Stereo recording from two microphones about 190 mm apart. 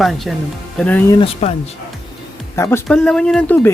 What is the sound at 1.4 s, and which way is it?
Speech, 35° left (ahead or behind).